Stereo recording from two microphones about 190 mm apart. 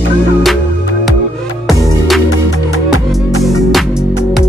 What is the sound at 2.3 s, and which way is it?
Music, 90° left.